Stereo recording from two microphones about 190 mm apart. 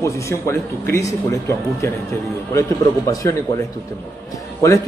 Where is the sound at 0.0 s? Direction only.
15° left (ahead or behind).